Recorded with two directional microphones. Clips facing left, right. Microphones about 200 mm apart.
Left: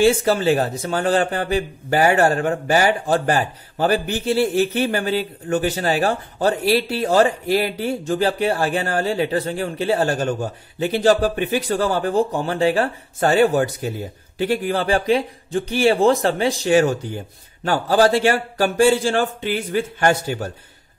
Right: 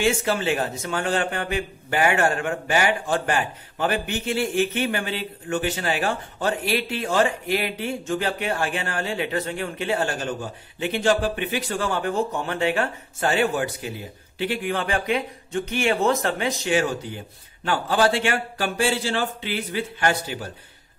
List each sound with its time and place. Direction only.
0.0 s a man's voice: 35° left (ahead or behind)